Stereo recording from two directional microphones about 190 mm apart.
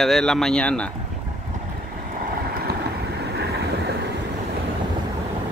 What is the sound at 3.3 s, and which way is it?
Waves, 60° right (ahead or behind).